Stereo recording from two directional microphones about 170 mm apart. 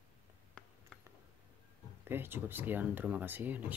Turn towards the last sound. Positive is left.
turn(degrees=-10)  # may be behind; listen again after turning